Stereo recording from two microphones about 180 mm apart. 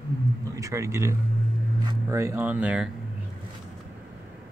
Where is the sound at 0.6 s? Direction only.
15° right (ahead or behind).